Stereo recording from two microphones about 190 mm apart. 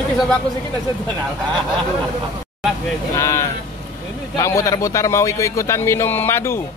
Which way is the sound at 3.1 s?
15° left (ahead or behind).